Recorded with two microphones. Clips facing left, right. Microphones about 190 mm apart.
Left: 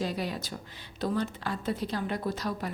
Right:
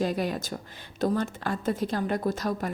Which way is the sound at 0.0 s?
50° right (ahead or behind).